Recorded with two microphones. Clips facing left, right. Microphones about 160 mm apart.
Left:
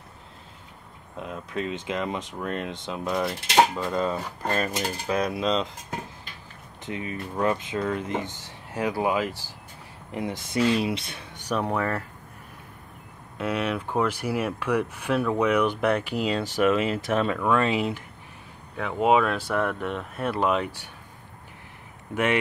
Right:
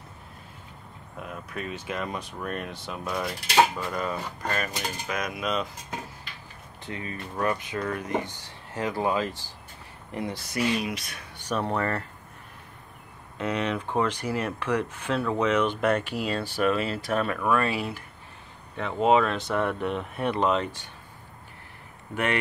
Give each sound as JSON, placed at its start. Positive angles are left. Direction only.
{"t": 1.1, "sound": "speech", "side_deg": 20}
{"t": 6.8, "sound": "speech", "side_deg": 20}
{"t": 11.3, "sound": "speech", "side_deg": 15}
{"t": 13.4, "sound": "speech", "side_deg": 5}
{"t": 18.8, "sound": "speech", "side_deg": 5}
{"t": 22.1, "sound": "speech", "side_deg": 15}